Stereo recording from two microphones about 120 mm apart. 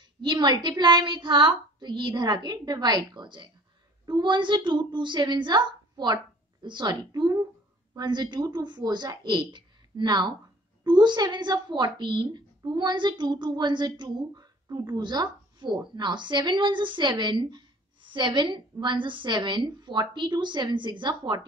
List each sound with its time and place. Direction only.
0.2 s a woman's voice: 40° right (ahead or behind)